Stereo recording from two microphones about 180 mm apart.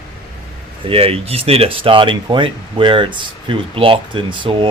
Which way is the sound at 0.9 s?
30° right (ahead or behind).